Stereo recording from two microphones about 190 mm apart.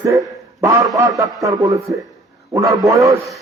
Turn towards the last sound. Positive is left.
turn(degrees=-15)  # may be behind; listen again after turning